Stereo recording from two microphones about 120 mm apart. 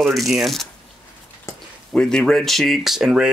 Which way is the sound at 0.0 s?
Centre (ahead or behind).